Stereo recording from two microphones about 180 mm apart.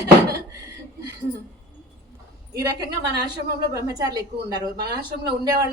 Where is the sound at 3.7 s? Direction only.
20° right (ahead or behind).